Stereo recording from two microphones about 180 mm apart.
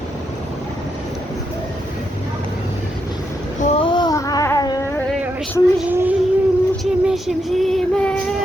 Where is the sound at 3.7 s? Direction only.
30° left (ahead or behind).